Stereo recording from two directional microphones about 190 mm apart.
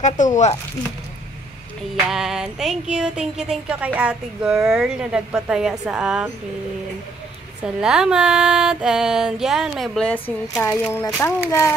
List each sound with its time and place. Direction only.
0.0 s speech: 40° left (ahead or behind)
2.0 s music: centre (ahead or behind)
7.6 s music: 5° right (ahead or behind); by 11.1 s 10° left (ahead or behind)
11.1 s speech: 10° left (ahead or behind)